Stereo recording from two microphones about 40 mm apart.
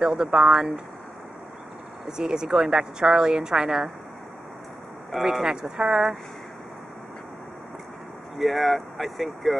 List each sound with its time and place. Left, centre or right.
0.0 s a woman's voice: centre
2.0 s a woman's voice: centre
5.2 s a woman's voice: centre
8.4 s speech: centre